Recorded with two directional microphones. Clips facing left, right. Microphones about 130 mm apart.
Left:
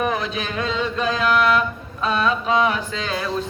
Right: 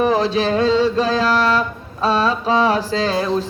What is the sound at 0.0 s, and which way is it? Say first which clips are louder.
Music: right 7 dB; 35° right (ahead or behind).